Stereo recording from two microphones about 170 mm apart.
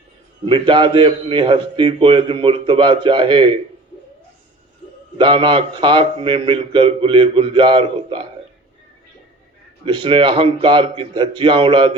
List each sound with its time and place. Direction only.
0.4 s a man's voice: 30° right (ahead or behind)
5.1 s a man's voice: 30° right (ahead or behind)
9.8 s a man's voice: 30° right (ahead or behind)